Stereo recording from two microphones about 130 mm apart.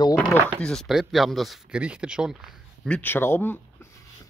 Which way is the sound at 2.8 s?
10° left (ahead or behind).